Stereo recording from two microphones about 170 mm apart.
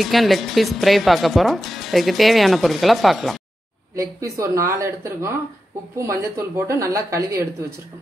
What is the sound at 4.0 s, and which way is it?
A woman's voice, 20° right (ahead or behind).